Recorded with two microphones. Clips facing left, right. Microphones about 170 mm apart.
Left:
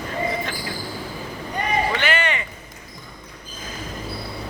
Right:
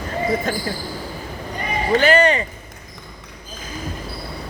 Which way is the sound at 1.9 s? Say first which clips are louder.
Right 8 dB; 40° right (ahead or behind).